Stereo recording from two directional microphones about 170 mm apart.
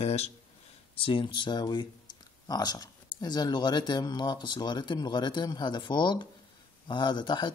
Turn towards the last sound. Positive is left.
turn(degrees=25)  # may be behind; listen again after turning